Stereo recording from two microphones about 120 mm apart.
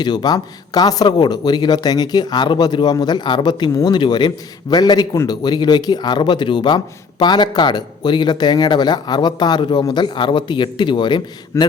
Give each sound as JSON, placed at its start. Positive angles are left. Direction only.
{"t": 0.0, "sound": "speech", "side_deg": 35}